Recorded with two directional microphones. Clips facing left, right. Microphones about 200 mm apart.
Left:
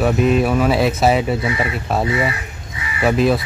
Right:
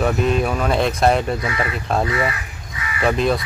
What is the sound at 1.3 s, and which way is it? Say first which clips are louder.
Speech: left 3 dB; 25° left (ahead or behind).